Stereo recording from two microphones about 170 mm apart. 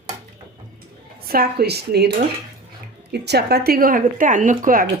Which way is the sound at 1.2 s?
65° right (ahead or behind).